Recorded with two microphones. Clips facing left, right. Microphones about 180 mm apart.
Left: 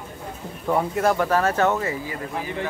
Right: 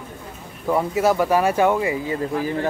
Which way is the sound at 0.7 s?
5° right (ahead or behind).